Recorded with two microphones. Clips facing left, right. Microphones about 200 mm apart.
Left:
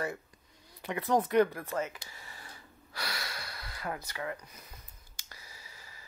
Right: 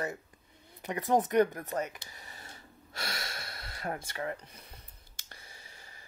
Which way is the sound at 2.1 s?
20° right (ahead or behind).